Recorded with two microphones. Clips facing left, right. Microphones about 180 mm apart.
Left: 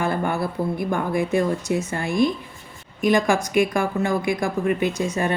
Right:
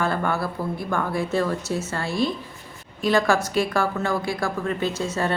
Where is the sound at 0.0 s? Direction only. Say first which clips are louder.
Left 1 dB; 15° left (ahead or behind).